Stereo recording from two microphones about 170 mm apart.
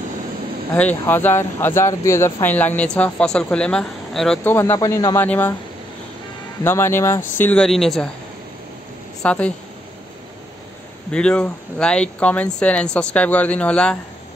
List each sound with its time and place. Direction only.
0.7 s speech: 10° left (ahead or behind)
4.5 s speech: 15° left (ahead or behind)
6.6 s speech: 15° left (ahead or behind)
9.2 s speech: 5° left (ahead or behind)
11.1 s speech: 5° left (ahead or behind)